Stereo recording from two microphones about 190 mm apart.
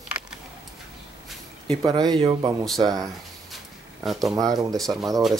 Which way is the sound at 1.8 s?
20° right (ahead or behind).